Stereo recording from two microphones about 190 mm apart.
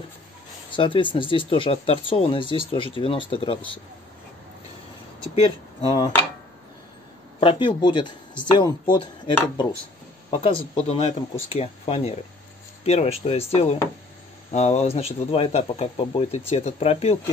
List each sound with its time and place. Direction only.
0.7 s speech: 25° left (ahead or behind)
5.3 s speech: 25° left (ahead or behind)
7.3 s speech: 25° left (ahead or behind)